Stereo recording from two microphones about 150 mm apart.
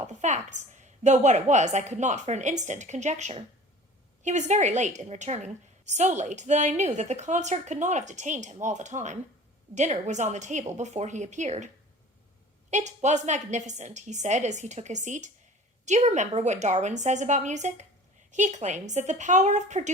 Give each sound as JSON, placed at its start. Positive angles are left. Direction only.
{"t": 0.1, "sound": "a woman's voice", "side_deg": -50}
{"t": 12.7, "sound": "a woman's voice", "side_deg": -50}